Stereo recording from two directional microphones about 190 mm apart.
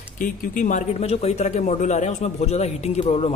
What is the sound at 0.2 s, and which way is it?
A man's voice, 45° left (ahead or behind).